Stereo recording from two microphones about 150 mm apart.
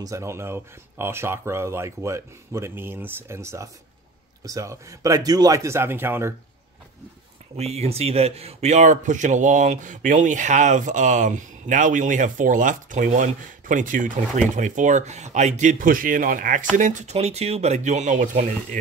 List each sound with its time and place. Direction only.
0.0 s a man's voice: 20° right (ahead or behind)
7.5 s speech: 45° right (ahead or behind); by 16.6 s 65° right (ahead or behind)
16.7 s speech: 55° right (ahead or behind)